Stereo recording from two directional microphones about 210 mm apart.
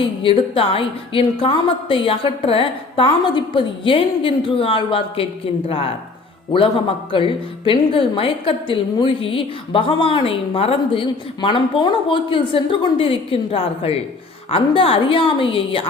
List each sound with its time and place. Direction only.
0.0 s a woman's voice: 25° left (ahead or behind)